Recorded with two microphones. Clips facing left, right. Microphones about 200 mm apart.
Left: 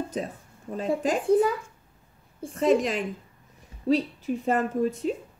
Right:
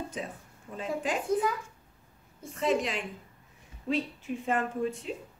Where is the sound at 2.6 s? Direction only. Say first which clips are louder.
Left 6 dB; 45° left (ahead or behind).